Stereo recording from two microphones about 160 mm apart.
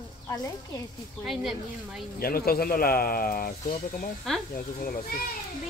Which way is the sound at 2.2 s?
70° left (ahead or behind).